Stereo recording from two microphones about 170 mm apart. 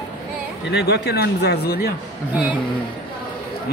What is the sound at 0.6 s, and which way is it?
Speech, 75° left (ahead or behind).